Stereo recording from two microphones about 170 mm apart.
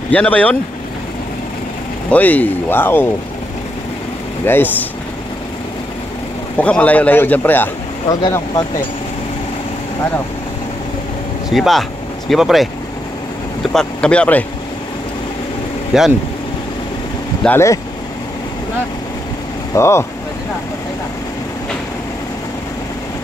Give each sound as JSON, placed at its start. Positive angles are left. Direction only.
{"t": 0.1, "sound": "a man's voice", "side_deg": 10}
{"t": 2.0, "sound": "a man's voice", "side_deg": 10}
{"t": 4.5, "sound": "a man's voice", "side_deg": 10}
{"t": 6.6, "sound": "a man's voice", "side_deg": 10}
{"t": 8.1, "sound": "speech", "side_deg": 25}
{"t": 11.5, "sound": "speech", "side_deg": 0}
{"t": 13.7, "sound": "a man's voice", "side_deg": 5}
{"t": 15.9, "sound": "speech", "side_deg": -5}
{"t": 17.4, "sound": "speech", "side_deg": 15}
{"t": 19.7, "sound": "a man's voice", "side_deg": 15}